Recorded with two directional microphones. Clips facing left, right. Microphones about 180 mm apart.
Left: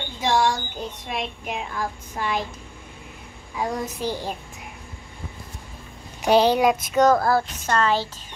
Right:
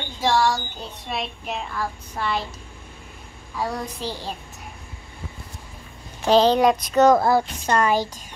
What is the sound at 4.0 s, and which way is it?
Speech, 15° left (ahead or behind).